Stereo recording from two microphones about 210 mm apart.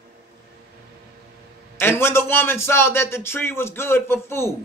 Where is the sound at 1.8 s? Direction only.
10° left (ahead or behind).